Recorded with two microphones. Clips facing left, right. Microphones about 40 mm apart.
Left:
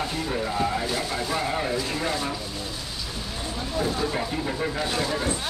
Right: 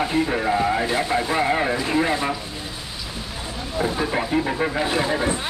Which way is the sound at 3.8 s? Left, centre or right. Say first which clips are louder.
Right 4 dB; right.